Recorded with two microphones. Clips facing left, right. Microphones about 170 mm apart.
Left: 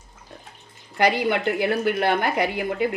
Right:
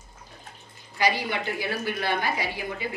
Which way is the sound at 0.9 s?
60° left (ahead or behind).